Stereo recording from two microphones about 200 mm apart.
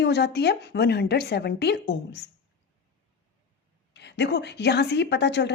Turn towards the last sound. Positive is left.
turn(degrees=60)  # may be behind; listen again after turning